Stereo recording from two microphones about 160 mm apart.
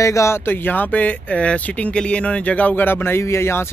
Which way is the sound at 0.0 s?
20° left (ahead or behind).